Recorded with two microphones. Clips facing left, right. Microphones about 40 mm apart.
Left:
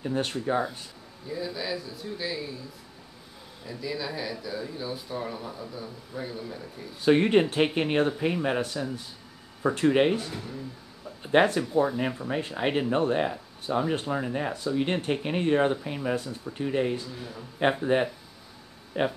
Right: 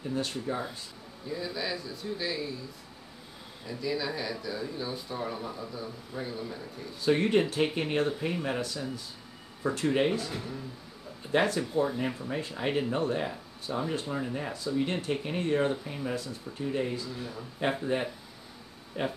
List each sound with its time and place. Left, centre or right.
0.2 s speech: left
1.3 s speech: centre
3.6 s speech: centre
7.0 s speech: left
11.3 s speech: left
17.2 s speech: centre
17.9 s speech: left